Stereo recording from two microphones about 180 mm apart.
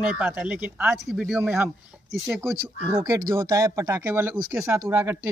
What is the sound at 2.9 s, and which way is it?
Speech, 20° right (ahead or behind).